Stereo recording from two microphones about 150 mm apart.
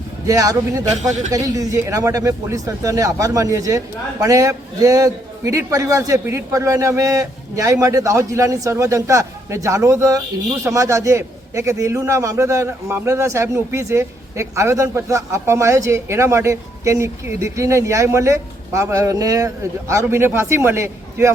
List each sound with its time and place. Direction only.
0.3 s a man's voice: 20° right (ahead or behind)